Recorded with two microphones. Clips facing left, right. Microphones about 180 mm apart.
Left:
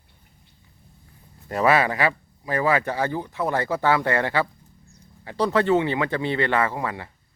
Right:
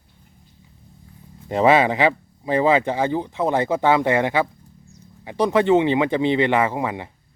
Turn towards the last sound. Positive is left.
turn(degrees=-20)  # may be behind; listen again after turning